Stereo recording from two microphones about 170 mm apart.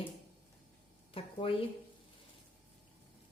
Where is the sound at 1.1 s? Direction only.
35° left (ahead or behind).